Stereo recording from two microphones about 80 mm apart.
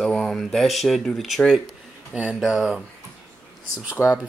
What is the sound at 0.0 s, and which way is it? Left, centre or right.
Speech, centre.